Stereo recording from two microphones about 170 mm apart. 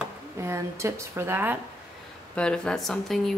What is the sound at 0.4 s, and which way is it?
Speech, 15° right (ahead or behind).